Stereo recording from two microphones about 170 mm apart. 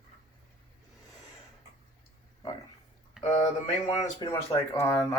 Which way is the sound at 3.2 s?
5° right (ahead or behind).